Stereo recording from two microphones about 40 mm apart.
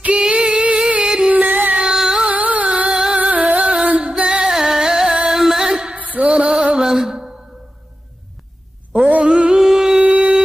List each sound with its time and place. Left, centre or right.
0.1 s female singing: right
1.3 s music: right
1.9 s music: centre
2.2 s music: right
2.9 s music: centre
3.2 s music: right
4.2 s music: right
4.5 s music: centre
5.7 s music: right
6.9 s mantra: centre
9.2 s music: right
9.6 s music: centre
10.0 s a sound: right